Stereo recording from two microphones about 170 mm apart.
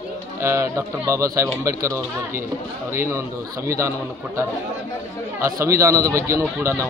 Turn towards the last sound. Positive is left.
turn(degrees=-15)  # may be behind; listen again after turning